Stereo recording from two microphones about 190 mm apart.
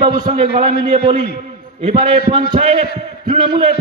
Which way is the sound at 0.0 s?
25° right (ahead or behind).